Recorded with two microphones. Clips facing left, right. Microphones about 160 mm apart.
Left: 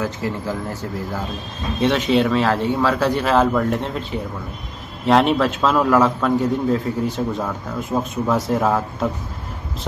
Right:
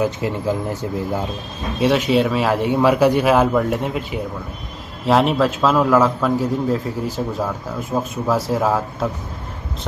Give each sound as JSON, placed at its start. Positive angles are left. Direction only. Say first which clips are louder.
{"t": 0.0, "sound": "speech", "louder": "right 4 dB", "side_deg": -20}
{"t": 1.8, "sound": "a man's voice", "louder": "right 1 dB", "side_deg": -5}